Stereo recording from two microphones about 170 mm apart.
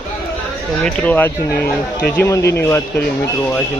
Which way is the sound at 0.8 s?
10° left (ahead or behind).